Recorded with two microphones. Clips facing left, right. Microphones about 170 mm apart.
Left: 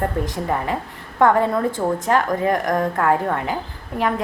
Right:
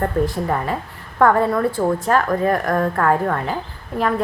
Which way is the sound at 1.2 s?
20° left (ahead or behind).